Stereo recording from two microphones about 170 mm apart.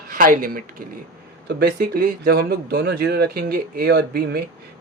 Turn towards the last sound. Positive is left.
turn(degrees=-75)  # may be behind; listen again after turning